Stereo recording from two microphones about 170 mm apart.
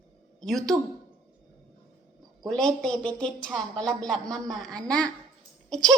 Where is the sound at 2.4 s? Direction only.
5° left (ahead or behind).